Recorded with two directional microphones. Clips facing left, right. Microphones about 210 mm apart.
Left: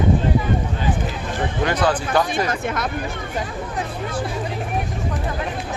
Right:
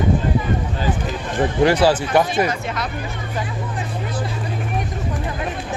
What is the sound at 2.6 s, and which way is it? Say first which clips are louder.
Speech: left 2 dB; 50° left (ahead or behind).